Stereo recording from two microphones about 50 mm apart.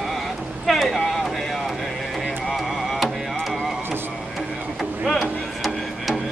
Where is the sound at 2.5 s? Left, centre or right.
Centre.